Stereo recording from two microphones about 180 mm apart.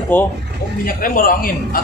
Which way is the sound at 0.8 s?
50° left (ahead or behind).